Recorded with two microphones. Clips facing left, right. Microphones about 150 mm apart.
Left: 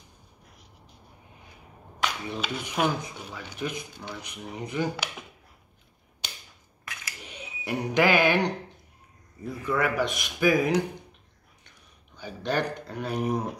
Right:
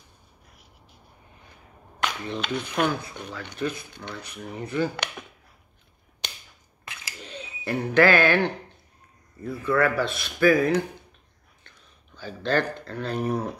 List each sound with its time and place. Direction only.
2.2 s speech: 10° left (ahead or behind)
6.8 s scissors: 30° right (ahead or behind)
7.2 s speech: 10° left (ahead or behind)
12.2 s speech: 15° left (ahead or behind)